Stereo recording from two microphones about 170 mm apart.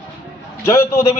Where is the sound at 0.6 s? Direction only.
15° left (ahead or behind).